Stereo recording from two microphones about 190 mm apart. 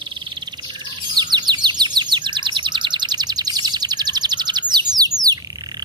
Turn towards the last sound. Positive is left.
turn(degrees=-20)  # may be behind; listen again after turning